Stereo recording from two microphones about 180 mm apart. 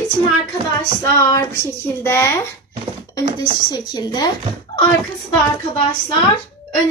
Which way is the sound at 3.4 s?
25° left (ahead or behind).